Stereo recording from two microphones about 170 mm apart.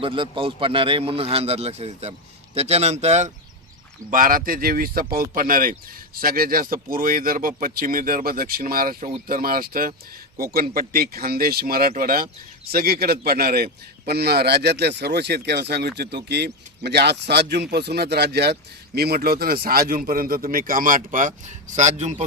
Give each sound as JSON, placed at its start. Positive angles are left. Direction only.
{"t": 0.0, "sound": "a man's voice", "side_deg": -30}
{"t": 4.1, "sound": "a man's voice", "side_deg": -55}